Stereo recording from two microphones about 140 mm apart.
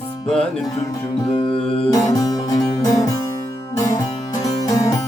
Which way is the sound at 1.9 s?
25° left (ahead or behind).